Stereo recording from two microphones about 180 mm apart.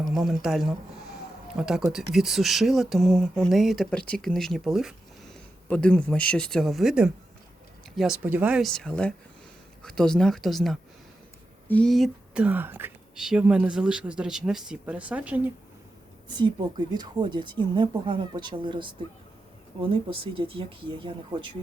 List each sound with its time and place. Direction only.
0.0 s speech: centre (ahead or behind)
16.3 s a woman's voice: 25° right (ahead or behind)